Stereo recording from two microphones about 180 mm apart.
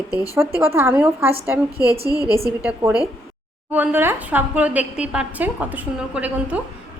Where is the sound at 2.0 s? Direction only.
20° left (ahead or behind).